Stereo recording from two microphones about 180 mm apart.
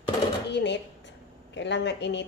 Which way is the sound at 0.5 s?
75° left (ahead or behind).